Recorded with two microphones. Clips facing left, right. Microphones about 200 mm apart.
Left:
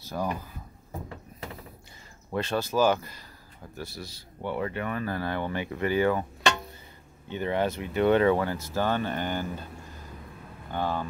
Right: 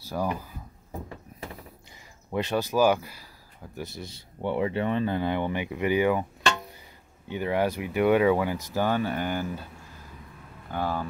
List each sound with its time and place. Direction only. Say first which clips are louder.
2.3 s speech: right 1 dB; 15° right (ahead or behind)
3.7 s speech: right 2 dB; 20° right (ahead or behind)
7.2 s speech: right 1 dB; 10° right (ahead or behind)
10.7 s speech: even; 5° right (ahead or behind)